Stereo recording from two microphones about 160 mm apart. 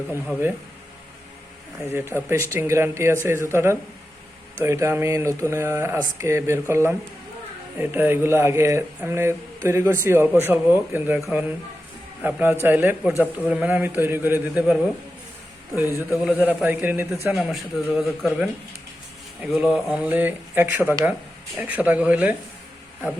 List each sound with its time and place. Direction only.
2.1 s a man's voice: 10° right (ahead or behind)